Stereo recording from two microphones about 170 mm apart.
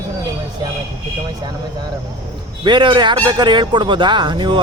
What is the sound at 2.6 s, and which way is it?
Speech, 25° right (ahead or behind).